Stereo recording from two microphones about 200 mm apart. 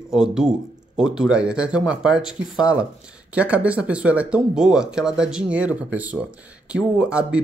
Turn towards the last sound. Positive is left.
turn(degrees=-5)  # may be behind; listen again after turning